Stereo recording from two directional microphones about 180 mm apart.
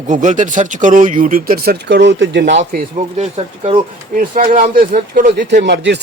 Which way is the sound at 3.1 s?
35° right (ahead or behind).